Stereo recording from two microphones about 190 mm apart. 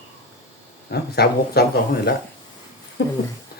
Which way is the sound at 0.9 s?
55° left (ahead or behind).